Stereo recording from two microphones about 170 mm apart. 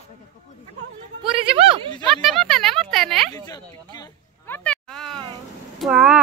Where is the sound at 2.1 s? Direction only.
Centre (ahead or behind).